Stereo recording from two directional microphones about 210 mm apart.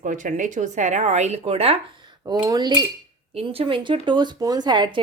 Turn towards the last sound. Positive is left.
turn(degrees=-20)  # may be behind; listen again after turning